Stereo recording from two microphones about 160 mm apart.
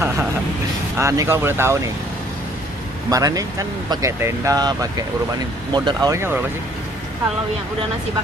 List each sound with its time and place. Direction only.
0.9 s speech: 20° right (ahead or behind)
3.1 s speech: 20° right (ahead or behind)